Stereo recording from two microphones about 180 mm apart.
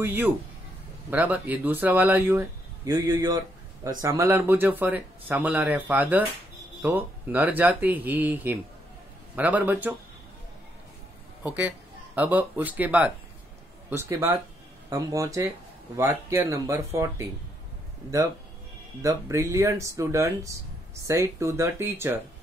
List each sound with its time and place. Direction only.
0.0 s speech: 10° right (ahead or behind)
12.2 s speech: 10° right (ahead or behind)
19.0 s speech: 15° right (ahead or behind)